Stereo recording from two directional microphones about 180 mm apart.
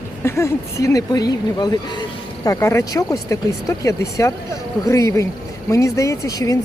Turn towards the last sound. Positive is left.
turn(degrees=20)  # may be behind; listen again after turning